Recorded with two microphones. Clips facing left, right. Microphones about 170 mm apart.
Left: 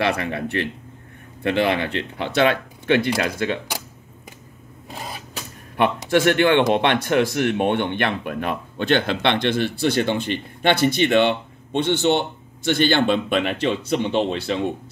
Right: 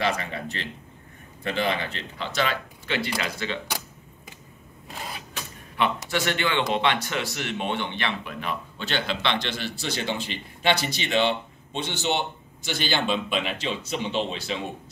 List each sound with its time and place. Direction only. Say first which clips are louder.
0.0 s speech: left 5 dB; 65° left (ahead or behind)
6.0 s speech: left 10 dB; 55° left (ahead or behind)